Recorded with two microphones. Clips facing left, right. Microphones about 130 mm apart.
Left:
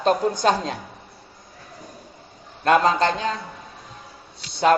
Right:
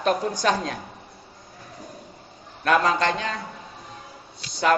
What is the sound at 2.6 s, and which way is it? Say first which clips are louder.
Speech: left 3 dB; 30° left (ahead or behind).